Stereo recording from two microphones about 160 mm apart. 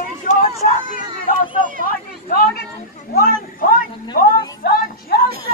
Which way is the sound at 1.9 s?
65° left (ahead or behind).